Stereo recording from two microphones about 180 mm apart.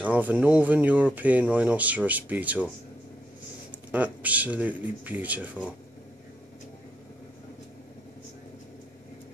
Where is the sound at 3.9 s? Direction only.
10° right (ahead or behind).